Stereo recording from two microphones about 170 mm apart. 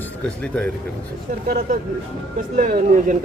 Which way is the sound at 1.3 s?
50° right (ahead or behind).